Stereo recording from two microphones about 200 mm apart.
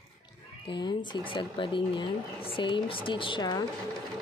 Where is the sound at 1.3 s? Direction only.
25° left (ahead or behind).